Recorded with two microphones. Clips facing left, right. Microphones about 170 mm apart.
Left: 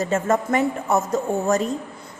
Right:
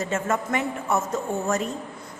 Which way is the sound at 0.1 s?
40° left (ahead or behind).